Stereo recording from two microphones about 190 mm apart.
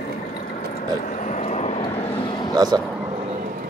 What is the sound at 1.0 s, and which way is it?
Vehicle, 40° left (ahead or behind).